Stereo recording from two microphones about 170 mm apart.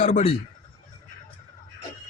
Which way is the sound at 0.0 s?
45° left (ahead or behind).